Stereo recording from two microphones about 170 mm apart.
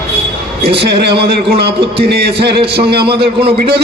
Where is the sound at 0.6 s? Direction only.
75° right (ahead or behind).